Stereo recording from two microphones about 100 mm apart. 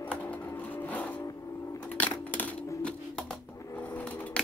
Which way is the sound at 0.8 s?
15° left (ahead or behind).